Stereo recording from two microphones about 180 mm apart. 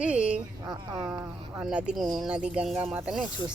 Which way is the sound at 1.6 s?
5° right (ahead or behind).